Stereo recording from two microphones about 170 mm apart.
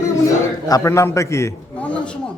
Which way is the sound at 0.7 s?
15° left (ahead or behind).